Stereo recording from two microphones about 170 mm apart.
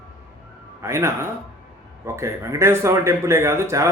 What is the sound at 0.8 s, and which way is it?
Speech, 15° right (ahead or behind).